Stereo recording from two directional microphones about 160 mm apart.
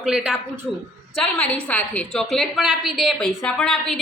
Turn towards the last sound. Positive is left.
turn(degrees=0)  # may be behind; listen again after turning